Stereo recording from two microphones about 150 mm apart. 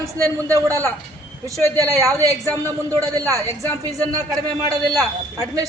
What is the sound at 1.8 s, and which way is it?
Speech, 20° right (ahead or behind).